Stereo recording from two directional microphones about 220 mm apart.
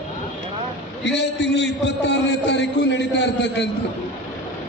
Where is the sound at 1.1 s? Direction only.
50° left (ahead or behind).